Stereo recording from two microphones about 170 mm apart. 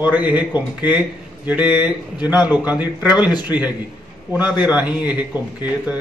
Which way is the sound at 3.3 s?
25° left (ahead or behind).